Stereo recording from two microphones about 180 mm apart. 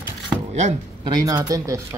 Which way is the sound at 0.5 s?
40° right (ahead or behind).